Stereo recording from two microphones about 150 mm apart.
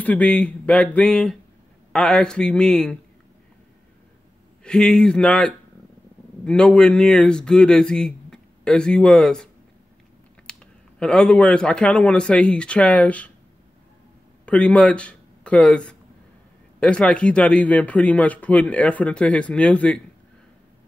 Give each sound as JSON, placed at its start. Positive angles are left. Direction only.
{"t": 0.0, "sound": "speech", "side_deg": 10}
{"t": 4.6, "sound": "speech", "side_deg": 5}
{"t": 14.4, "sound": "speech", "side_deg": 10}